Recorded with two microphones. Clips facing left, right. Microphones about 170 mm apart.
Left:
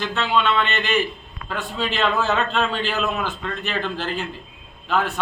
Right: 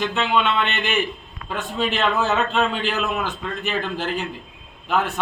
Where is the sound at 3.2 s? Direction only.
15° right (ahead or behind).